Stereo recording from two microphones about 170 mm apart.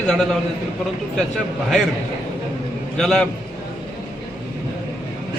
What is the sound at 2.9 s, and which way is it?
Speech, 5° left (ahead or behind).